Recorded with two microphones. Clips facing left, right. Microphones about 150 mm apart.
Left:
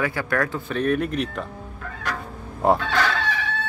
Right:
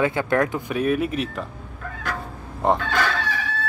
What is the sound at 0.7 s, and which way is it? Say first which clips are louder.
Speech: left 3 dB; 5° right (ahead or behind).